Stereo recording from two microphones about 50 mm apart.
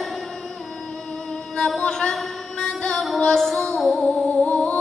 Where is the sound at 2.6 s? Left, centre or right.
Centre.